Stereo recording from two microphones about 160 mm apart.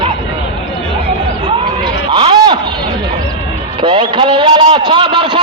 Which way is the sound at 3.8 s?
30° right (ahead or behind).